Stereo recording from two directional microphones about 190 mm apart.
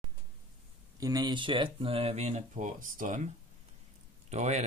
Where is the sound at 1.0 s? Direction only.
20° right (ahead or behind).